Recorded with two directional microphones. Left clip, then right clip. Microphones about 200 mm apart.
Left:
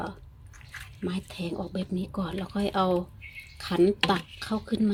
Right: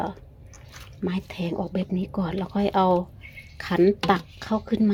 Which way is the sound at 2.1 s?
10° right (ahead or behind).